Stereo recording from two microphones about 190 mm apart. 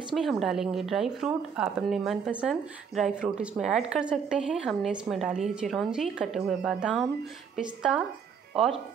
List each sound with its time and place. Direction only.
0.1 s a woman's voice: centre (ahead or behind)